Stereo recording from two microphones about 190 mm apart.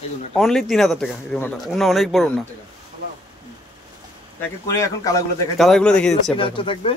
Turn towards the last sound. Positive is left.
turn(degrees=25)  # may be behind; listen again after turning